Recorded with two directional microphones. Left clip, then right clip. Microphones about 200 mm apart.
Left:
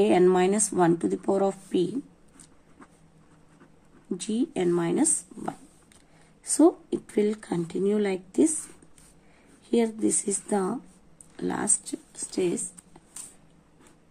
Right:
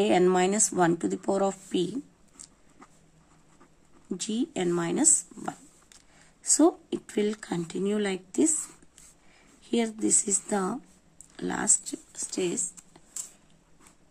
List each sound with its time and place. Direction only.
0.0 s speech: 15° right (ahead or behind)
4.1 s speech: 15° right (ahead or behind)
9.7 s speech: 15° right (ahead or behind)